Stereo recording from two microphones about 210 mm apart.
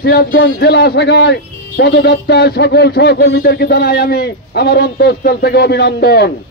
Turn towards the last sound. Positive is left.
turn(degrees=50)  # may be behind; listen again after turning